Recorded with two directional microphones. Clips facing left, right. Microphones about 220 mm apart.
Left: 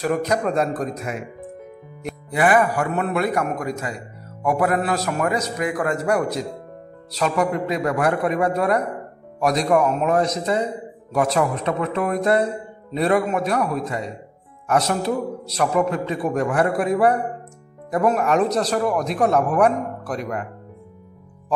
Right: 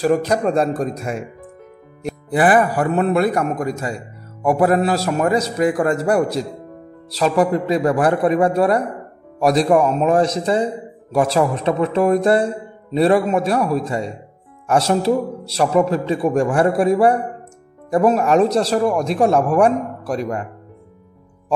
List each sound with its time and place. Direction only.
0.0 s a man's voice: 30° right (ahead or behind)